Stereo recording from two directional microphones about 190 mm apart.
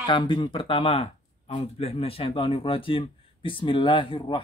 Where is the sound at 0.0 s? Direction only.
25° left (ahead or behind).